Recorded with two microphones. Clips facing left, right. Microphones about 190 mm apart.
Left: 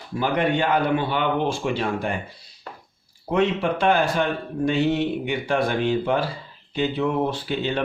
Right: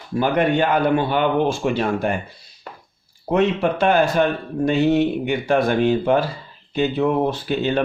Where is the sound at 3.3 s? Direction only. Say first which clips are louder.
Right 3 dB; 45° right (ahead or behind).